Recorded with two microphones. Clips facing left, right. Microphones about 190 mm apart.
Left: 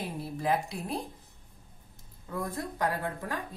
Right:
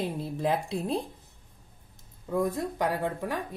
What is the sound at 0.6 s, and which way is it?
Speech, 25° right (ahead or behind).